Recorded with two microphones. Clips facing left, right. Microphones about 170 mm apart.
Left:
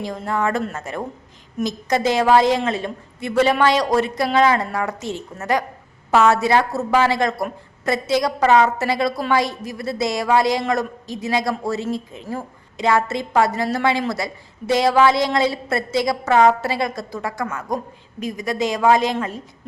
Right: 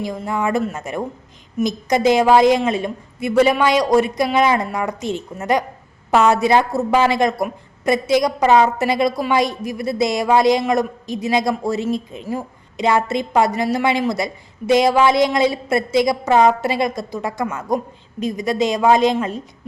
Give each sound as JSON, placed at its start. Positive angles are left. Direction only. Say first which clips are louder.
{"t": 0.0, "sound": "a woman's voice", "louder": "right 1 dB", "side_deg": -10}